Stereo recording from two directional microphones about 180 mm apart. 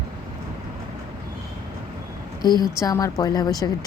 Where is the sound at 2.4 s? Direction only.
25° left (ahead or behind).